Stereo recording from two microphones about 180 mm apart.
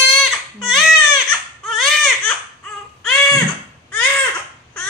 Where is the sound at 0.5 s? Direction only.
Centre (ahead or behind).